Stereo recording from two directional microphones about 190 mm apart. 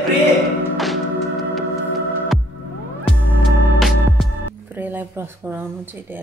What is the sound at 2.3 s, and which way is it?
Music, centre (ahead or behind).